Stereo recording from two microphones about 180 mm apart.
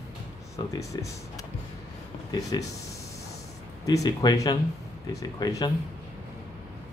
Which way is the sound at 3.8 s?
20° left (ahead or behind).